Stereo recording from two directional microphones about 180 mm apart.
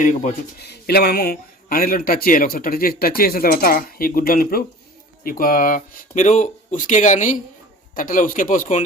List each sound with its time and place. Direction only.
0.0 s speech: 45° left (ahead or behind)
0.6 s speech: 60° left (ahead or behind); by 8.8 s 45° left (ahead or behind)